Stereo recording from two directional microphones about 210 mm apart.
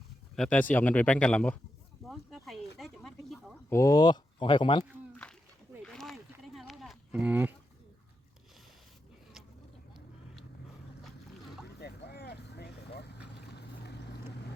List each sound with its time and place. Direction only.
0.3 s speech: 5° left (ahead or behind)
2.0 s a sound: centre (ahead or behind)
3.7 s speech: 15° left (ahead or behind)
5.8 s a sound: centre (ahead or behind)
11.8 s vehicle: 50° left (ahead or behind)
13.5 s boat: 50° left (ahead or behind)